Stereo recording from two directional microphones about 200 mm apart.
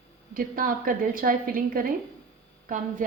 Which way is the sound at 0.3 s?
45° right (ahead or behind).